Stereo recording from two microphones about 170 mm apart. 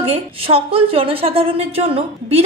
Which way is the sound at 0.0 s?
35° right (ahead or behind).